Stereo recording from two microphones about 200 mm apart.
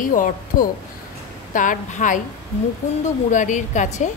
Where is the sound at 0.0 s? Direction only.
40° left (ahead or behind).